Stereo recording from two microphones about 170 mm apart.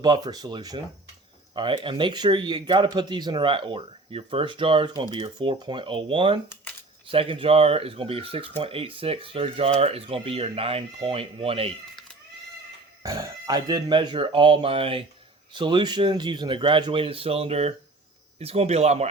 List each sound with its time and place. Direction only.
0.0 s speech: 25° right (ahead or behind)
13.0 s speech: 20° right (ahead or behind); by 19.0 s 40° right (ahead or behind)